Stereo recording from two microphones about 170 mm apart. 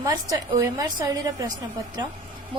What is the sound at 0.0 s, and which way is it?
A woman's voice, 20° right (ahead or behind).